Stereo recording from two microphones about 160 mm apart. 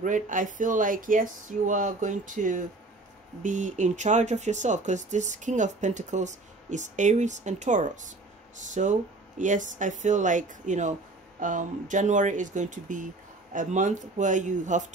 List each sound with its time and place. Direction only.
0.0 s speech: 55° right (ahead or behind)